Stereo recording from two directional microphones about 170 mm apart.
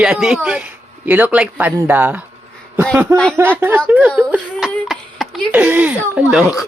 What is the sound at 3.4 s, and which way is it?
Speech, 10° right (ahead or behind).